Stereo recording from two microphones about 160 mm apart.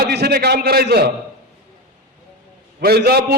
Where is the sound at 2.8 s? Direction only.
80° right.